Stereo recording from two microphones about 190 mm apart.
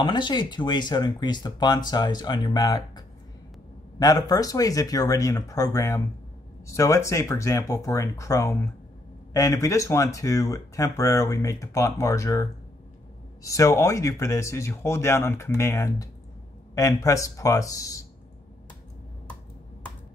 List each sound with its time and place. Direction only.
0.0 s speech: 25° left (ahead or behind)
4.0 s speech: 20° left (ahead or behind)